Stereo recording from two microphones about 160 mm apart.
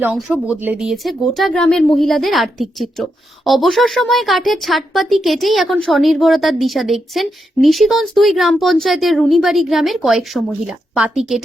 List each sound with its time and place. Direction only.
0.0 s a woman's voice: 5° right (ahead or behind)